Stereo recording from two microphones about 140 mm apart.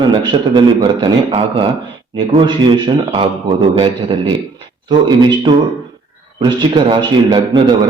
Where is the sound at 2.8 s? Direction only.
35° right (ahead or behind).